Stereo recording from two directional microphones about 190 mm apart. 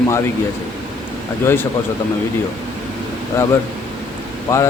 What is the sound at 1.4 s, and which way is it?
Speech, 10° left (ahead or behind).